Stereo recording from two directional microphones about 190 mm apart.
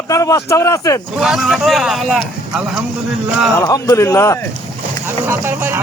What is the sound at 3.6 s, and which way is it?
Speech, 15° left (ahead or behind).